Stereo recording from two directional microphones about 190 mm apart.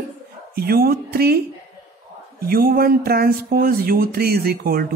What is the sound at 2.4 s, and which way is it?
Speech, 50° right (ahead or behind).